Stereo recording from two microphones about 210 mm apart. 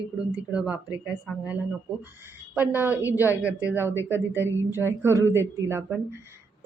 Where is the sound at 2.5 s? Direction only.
10° right (ahead or behind).